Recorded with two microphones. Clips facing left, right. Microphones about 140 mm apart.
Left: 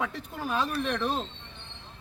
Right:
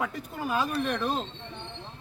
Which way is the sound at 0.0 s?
5° right (ahead or behind).